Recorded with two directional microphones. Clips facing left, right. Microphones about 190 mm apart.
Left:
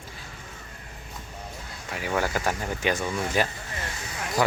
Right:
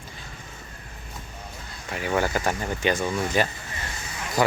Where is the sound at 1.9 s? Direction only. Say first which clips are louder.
Right 2 dB; centre (ahead or behind).